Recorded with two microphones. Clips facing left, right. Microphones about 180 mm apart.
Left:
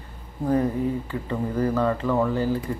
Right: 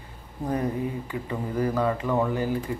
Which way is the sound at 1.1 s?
10° right (ahead or behind).